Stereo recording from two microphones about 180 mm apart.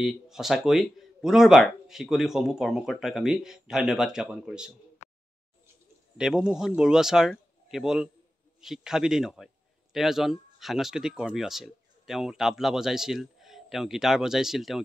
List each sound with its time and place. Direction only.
0.0 s speech: centre (ahead or behind)
5.0 s a sound: 40° left (ahead or behind)
6.1 s speech: 5° right (ahead or behind)